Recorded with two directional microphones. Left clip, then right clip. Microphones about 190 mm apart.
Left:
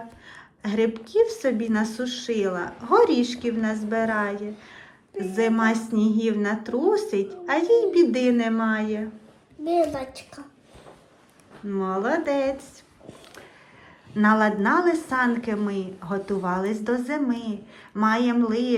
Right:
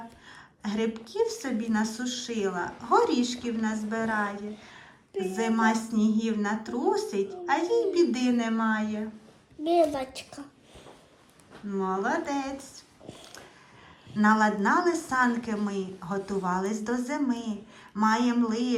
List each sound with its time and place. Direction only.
0.3 s a sound: 20° right (ahead or behind)
1.1 s a woman's voice: 20° right (ahead or behind)
9.6 s a woman's voice: centre (ahead or behind)
11.7 s a woman's voice: 20° right (ahead or behind)
14.2 s a woman's voice: 20° right (ahead or behind)